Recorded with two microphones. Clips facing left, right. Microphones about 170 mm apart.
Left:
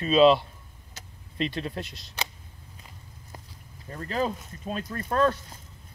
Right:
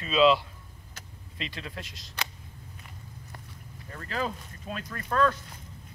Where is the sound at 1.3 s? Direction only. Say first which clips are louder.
Left 9 dB; 35° left (ahead or behind).